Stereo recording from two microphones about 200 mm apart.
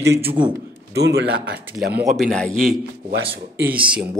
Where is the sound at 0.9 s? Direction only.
55° right (ahead or behind).